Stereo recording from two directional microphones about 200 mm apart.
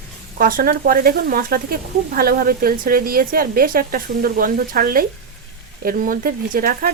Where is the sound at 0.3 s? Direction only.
45° right (ahead or behind).